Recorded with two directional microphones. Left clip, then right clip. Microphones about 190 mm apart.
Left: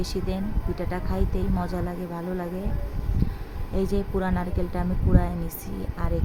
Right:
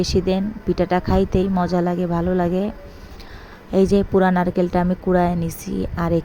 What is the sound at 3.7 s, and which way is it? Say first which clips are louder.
A woman's voice: right 11 dB; 35° right (ahead or behind).